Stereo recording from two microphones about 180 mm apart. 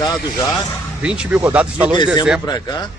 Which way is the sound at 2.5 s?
25° left (ahead or behind).